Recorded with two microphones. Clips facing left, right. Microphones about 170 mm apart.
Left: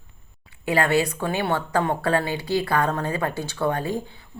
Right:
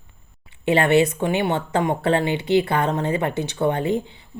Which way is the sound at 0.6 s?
25° right (ahead or behind).